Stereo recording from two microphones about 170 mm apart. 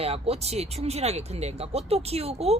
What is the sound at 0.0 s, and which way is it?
A woman's voice, 35° right (ahead or behind).